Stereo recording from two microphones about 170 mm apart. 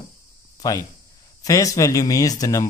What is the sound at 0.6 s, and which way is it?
Speech, 20° left (ahead or behind).